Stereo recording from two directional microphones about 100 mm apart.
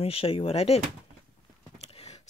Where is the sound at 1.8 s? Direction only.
90° left.